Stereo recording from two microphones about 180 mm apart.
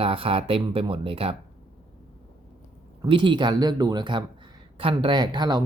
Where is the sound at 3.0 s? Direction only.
25° right (ahead or behind).